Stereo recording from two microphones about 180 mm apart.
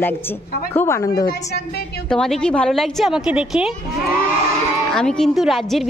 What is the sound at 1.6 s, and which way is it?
Speech, 60° left (ahead or behind).